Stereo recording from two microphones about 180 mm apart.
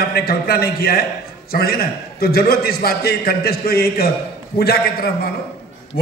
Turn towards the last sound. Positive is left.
turn(degrees=60)  # may be behind; listen again after turning